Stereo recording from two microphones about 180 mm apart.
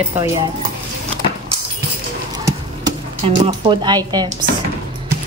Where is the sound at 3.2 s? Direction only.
35° right (ahead or behind).